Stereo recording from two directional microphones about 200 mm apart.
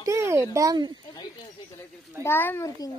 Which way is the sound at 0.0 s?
15° right (ahead or behind).